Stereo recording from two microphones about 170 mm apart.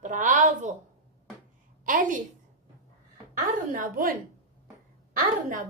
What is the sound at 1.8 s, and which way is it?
Speech, 50° right (ahead or behind).